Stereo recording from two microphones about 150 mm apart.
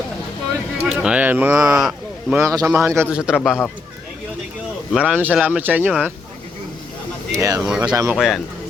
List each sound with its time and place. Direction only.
0.9 s speech: 5° right (ahead or behind)
2.4 s a man's voice: 20° right (ahead or behind)
3.0 s a man's voice: 5° right (ahead or behind)
4.9 s speech: 5° right (ahead or behind)
7.3 s a man's voice: 20° right (ahead or behind)
7.6 s a man's voice: 5° right (ahead or behind)
7.9 s a man's voice: 20° right (ahead or behind)
8.1 s a man's voice: centre (ahead or behind)